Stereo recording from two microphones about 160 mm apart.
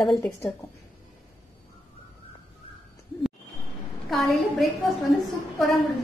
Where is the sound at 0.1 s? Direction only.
5° left (ahead or behind).